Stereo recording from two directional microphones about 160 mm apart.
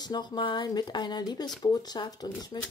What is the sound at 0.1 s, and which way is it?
Speech, 30° left (ahead or behind).